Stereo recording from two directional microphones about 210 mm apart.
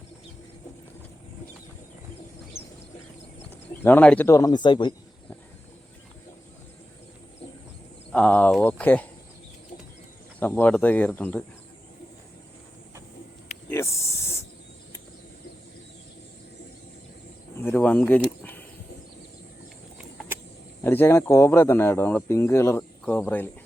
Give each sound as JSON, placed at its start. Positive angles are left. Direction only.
{"t": 3.8, "sound": "speech", "side_deg": 10}
{"t": 8.1, "sound": "speech", "side_deg": 5}
{"t": 10.4, "sound": "speech", "side_deg": 10}
{"t": 13.7, "sound": "snake", "side_deg": 15}
{"t": 17.6, "sound": "a sound", "side_deg": 10}
{"t": 20.8, "sound": "speech", "side_deg": 10}